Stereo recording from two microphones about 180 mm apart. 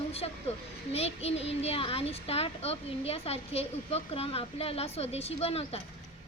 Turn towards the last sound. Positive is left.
turn(degrees=35)  # may be behind; listen again after turning